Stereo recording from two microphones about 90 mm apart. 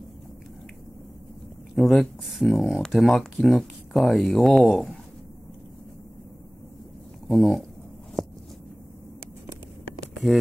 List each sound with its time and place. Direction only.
1.8 s speech: centre (ahead or behind)
7.2 s speech: centre (ahead or behind)
8.2 s heart sounds: centre (ahead or behind)